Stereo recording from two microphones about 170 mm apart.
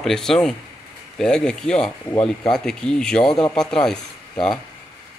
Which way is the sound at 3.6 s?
5° left (ahead or behind).